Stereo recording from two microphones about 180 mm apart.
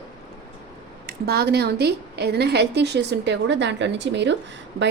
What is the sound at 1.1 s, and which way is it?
A woman's voice, 60° right (ahead or behind).